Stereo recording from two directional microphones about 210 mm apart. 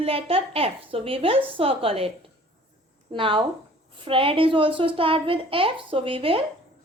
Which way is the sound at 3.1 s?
25° right (ahead or behind).